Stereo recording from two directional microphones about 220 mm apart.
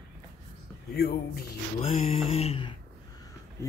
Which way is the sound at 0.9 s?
45° left (ahead or behind).